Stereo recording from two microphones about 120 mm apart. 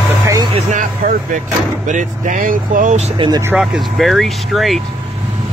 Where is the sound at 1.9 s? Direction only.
90° right.